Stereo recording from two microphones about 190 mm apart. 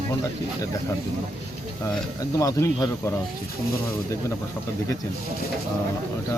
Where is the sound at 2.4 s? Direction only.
20° left (ahead or behind).